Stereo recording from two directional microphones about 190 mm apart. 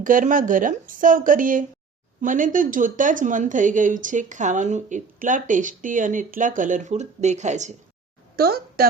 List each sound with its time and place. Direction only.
0.0 s speech: 45° right (ahead or behind)
8.4 s a woman's voice: 55° right (ahead or behind)